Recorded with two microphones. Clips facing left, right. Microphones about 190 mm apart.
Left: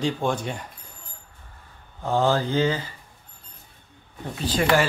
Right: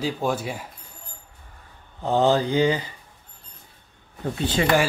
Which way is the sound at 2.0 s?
20° right (ahead or behind).